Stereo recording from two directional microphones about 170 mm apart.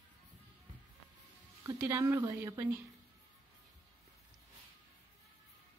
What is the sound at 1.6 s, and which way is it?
Speech, 15° right (ahead or behind).